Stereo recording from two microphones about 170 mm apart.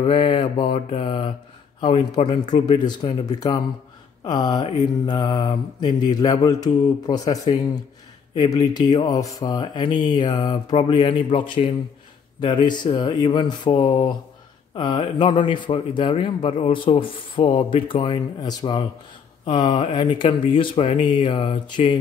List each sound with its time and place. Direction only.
0.0 s a man's voice: 30° left (ahead or behind)